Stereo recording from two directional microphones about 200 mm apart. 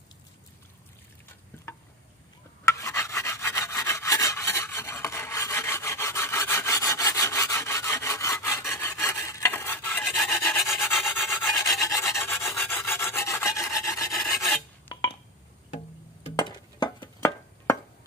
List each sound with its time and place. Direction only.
2.6 s rub: 15° left (ahead or behind)
11.0 s rub: centre (ahead or behind)
11.5 s filing: 20° left (ahead or behind)
16.3 s a sound: 20° left (ahead or behind)